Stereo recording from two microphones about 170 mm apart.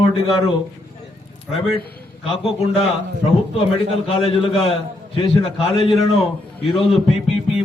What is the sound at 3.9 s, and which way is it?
A man's voice, 35° left (ahead or behind).